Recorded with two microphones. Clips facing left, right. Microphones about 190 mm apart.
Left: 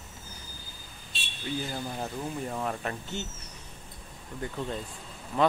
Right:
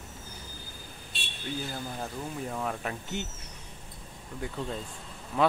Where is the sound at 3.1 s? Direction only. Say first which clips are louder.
Right 1 dB; 15° right (ahead or behind).